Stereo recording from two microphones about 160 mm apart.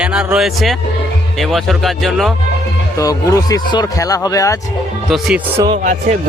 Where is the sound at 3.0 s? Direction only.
20° left (ahead or behind).